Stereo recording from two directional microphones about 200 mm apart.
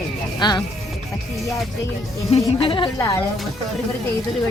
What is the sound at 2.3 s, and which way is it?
Speech, 25° left (ahead or behind).